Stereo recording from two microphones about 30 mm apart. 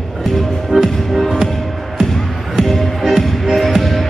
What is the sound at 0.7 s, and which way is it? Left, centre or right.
Music, centre.